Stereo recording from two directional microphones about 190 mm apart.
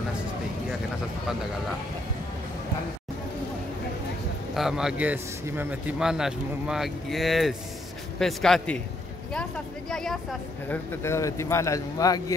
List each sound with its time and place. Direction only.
4.6 s speech: 5° right (ahead or behind); by 12.4 s 15° left (ahead or behind)